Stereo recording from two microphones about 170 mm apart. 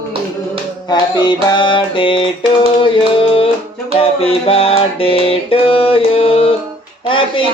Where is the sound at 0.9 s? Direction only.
25° left (ahead or behind).